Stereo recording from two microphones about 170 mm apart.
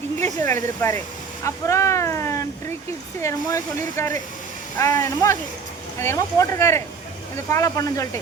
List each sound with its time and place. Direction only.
0.2 s speech: 15° left (ahead or behind)